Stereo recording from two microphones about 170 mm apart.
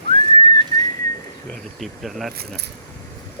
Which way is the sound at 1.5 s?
Centre (ahead or behind).